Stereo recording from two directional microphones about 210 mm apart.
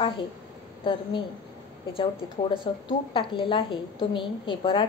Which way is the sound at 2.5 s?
25° left (ahead or behind).